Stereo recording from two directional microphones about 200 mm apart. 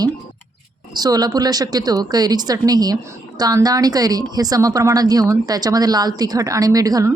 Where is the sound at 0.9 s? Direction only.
20° right (ahead or behind).